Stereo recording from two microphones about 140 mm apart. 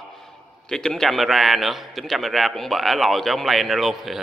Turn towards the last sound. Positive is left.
turn(degrees=0)  # may be behind; listen again after turning